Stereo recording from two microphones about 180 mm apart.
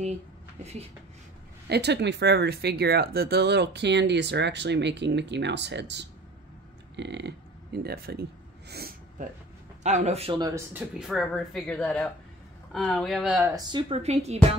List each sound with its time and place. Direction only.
1.7 s speech: 70° right (ahead or behind)
9.8 s speech: 40° right (ahead or behind)
10.7 s speech: 5° right (ahead or behind)
13.7 s speech: 25° right (ahead or behind)